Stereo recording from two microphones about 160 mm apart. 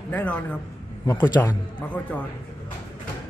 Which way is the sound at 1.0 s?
25° left (ahead or behind).